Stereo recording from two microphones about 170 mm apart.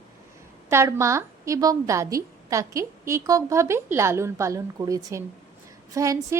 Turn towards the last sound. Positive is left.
turn(degrees=-20)  # may be behind; listen again after turning